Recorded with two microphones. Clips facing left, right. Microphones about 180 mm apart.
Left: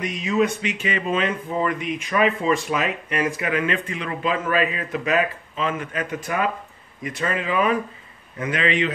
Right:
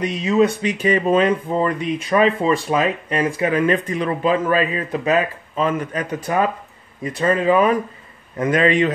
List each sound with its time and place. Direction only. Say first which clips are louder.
0.0 s a man's voice: right 5 dB; 35° right (ahead or behind)